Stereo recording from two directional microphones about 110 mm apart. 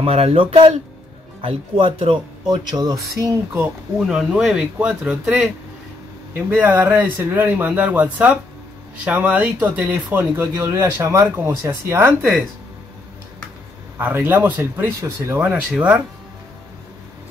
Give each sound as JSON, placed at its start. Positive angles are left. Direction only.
{"t": 0.0, "sound": "speech", "side_deg": -65}
{"t": 2.4, "sound": "speech", "side_deg": -40}
{"t": 4.0, "sound": "speech", "side_deg": 0}
{"t": 6.3, "sound": "speech", "side_deg": -15}
{"t": 13.9, "sound": "speech", "side_deg": -20}
{"t": 15.7, "sound": "speech", "side_deg": -15}